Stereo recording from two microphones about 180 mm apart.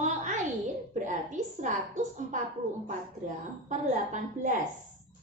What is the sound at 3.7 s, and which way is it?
Speech, 45° right (ahead or behind).